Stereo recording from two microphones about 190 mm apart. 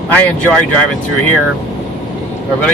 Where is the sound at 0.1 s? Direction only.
10° left (ahead or behind).